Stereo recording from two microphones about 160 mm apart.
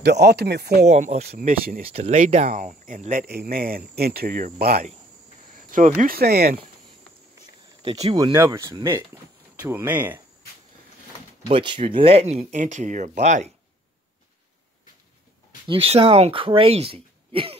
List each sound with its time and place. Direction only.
0.0 s speech: 90° right
0.8 s speech: 45° right (ahead or behind)
1.2 s speech: 70° right (ahead or behind)
1.9 s speech: 40° right (ahead or behind); by 3.8 s 65° right (ahead or behind)
3.9 s speech: 75° right (ahead or behind)
5.6 s cricket: 55° right (ahead or behind)
6.0 s speech: 80° right
8.2 s speech: 25° right (ahead or behind)
11.4 s speech: 30° right (ahead or behind); by 13.5 s 45° right (ahead or behind)
15.7 s speech: 35° right (ahead or behind)